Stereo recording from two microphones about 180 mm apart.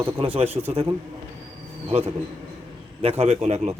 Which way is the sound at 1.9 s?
35° right (ahead or behind).